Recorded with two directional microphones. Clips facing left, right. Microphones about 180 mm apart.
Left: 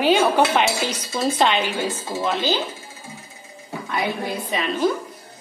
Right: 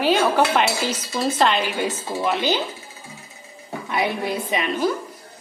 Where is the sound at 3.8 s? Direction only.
25° right (ahead or behind).